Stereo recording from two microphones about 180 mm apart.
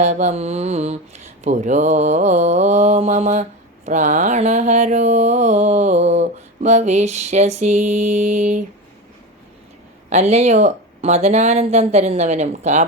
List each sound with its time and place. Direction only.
0.0 s mantra: 40° right (ahead or behind)
3.8 s a sound: 40° right (ahead or behind)
10.1 s mantra: 35° right (ahead or behind)